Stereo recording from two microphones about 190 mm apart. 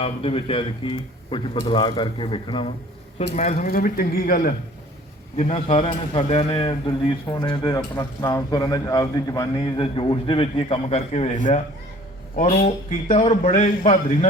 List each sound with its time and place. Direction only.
0.0 s a man's voice: 30° left (ahead or behind)
3.3 s speech: 40° left (ahead or behind)
5.4 s a man's voice: 30° left (ahead or behind)
12.4 s a man's voice: 35° left (ahead or behind)